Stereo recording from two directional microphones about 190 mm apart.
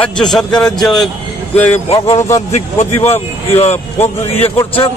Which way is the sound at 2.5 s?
35° left (ahead or behind).